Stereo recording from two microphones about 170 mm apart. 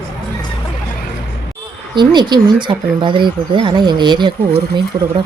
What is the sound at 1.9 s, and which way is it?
Speech, 25° right (ahead or behind).